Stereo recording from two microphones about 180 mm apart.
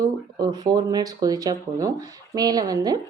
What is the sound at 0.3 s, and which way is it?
Speech, 20° right (ahead or behind).